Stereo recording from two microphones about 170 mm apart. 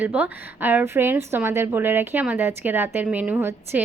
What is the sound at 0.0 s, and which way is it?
A woman's voice, 10° right (ahead or behind).